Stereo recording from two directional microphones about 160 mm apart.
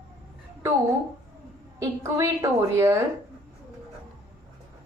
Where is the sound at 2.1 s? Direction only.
20° right (ahead or behind).